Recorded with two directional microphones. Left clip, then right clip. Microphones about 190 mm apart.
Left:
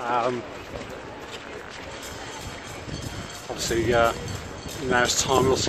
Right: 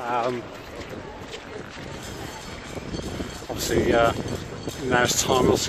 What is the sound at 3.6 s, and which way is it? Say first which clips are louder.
Speech: right 1 dB; 15° right (ahead or behind).